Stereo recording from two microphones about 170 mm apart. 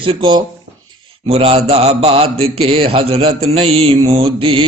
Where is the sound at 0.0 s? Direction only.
30° right (ahead or behind).